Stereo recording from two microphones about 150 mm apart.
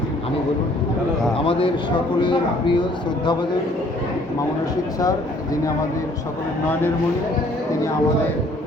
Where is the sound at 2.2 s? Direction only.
30° left (ahead or behind).